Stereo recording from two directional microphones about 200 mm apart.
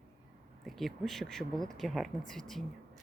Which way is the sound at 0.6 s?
Centre (ahead or behind).